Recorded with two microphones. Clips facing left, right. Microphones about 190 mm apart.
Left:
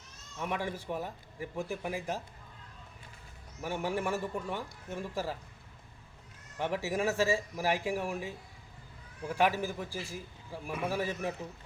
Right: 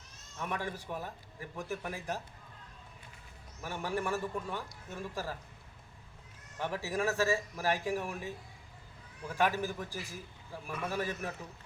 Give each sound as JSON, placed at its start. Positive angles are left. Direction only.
{"t": 0.4, "sound": "a man's voice", "side_deg": 15}
{"t": 3.6, "sound": "a man's voice", "side_deg": 15}
{"t": 6.6, "sound": "a man's voice", "side_deg": 15}
{"t": 9.3, "sound": "a man's voice", "side_deg": 15}